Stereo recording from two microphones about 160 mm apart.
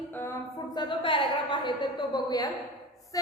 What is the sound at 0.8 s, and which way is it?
A woman's voice, 30° left (ahead or behind).